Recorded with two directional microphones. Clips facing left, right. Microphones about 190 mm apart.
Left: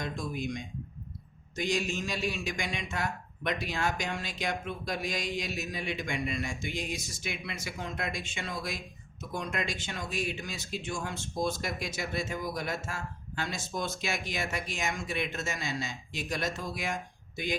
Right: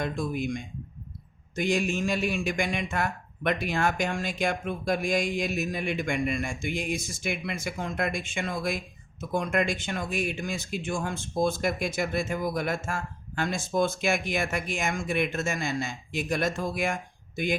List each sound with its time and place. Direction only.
0.0 s speech: 55° right (ahead or behind)